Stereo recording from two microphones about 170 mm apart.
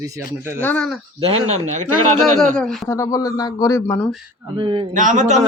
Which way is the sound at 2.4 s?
5° left (ahead or behind).